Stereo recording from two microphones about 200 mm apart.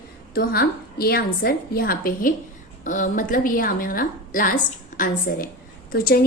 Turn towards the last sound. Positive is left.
turn(degrees=50)  # may be behind; listen again after turning